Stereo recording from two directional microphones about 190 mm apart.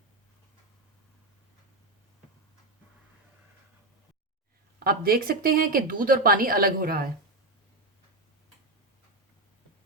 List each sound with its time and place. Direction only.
4.8 s speech: 50° right (ahead or behind)